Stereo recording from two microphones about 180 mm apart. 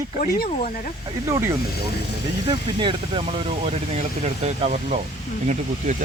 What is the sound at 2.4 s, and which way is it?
Speech, 25° right (ahead or behind).